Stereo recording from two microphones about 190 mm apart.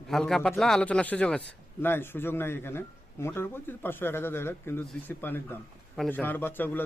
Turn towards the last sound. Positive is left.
turn(degrees=10)  # may be behind; listen again after turning